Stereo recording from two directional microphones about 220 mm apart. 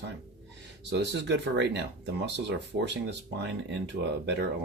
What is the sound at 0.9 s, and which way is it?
Speech, 50° right (ahead or behind).